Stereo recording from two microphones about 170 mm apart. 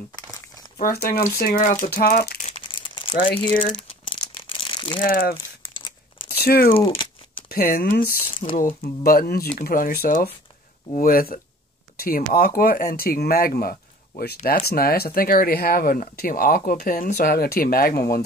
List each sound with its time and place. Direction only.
0.8 s speech: 60° left (ahead or behind)
2.4 s crumpling: 30° left (ahead or behind)
4.1 s a sound: 30° left (ahead or behind)
5.0 s speech: 55° left (ahead or behind)
5.6 s crumpling: 30° left (ahead or behind)
6.4 s speech: 60° left (ahead or behind)
6.7 s speech: 30° left (ahead or behind)
7.4 s speech: 60° left (ahead or behind)